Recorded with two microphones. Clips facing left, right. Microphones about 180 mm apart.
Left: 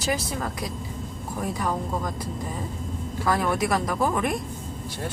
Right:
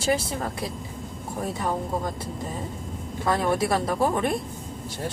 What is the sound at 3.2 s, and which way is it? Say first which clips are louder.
Speech: right 1 dB; 25° right (ahead or behind).